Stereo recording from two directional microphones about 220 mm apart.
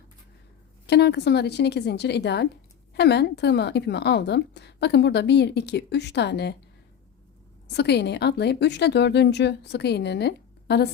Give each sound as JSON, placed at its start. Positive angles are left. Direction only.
{"t": 0.9, "sound": "a woman's voice", "side_deg": 50}
{"t": 7.7, "sound": "a woman's voice", "side_deg": 50}